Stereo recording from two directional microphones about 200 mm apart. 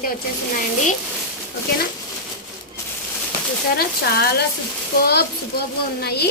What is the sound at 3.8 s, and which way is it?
A woman's voice, 50° left (ahead or behind).